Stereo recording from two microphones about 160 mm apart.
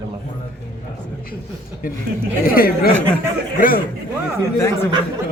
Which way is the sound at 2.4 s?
65° left (ahead or behind).